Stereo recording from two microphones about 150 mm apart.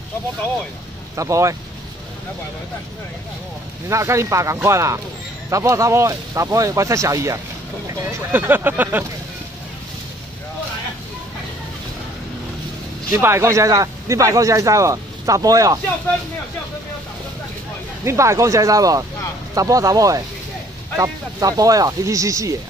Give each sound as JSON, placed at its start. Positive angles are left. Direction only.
{"t": 1.1, "sound": "speech", "side_deg": -20}
{"t": 3.9, "sound": "speech", "side_deg": -20}
{"t": 13.1, "sound": "speech", "side_deg": -20}
{"t": 18.0, "sound": "speech", "side_deg": -20}